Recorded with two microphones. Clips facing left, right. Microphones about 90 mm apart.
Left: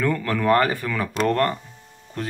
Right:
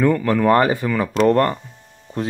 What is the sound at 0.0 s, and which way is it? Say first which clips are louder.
Speech: right 6 dB; 20° right (ahead or behind).